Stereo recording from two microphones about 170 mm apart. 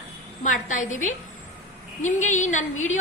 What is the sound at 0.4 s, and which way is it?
A woman's voice, 50° left (ahead or behind).